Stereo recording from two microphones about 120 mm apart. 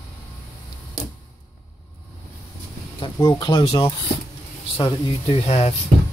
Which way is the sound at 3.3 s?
40° left (ahead or behind).